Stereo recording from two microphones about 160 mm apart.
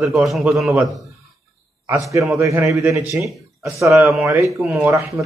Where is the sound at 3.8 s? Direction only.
15° right (ahead or behind).